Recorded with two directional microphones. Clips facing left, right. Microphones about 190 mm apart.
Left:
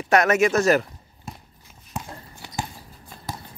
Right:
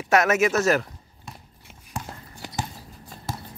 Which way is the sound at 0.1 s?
5° right (ahead or behind).